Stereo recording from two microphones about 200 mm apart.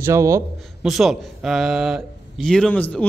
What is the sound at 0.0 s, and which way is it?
Speech, 15° right (ahead or behind).